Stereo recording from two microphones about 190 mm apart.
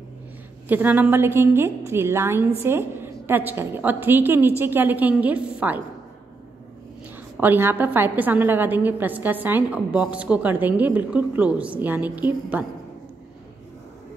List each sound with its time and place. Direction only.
0.7 s a woman's voice: 10° right (ahead or behind)
7.3 s a woman's voice: 10° right (ahead or behind)